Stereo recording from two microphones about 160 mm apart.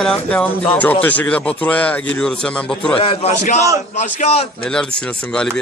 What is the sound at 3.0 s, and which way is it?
A man's voice, 40° left (ahead or behind).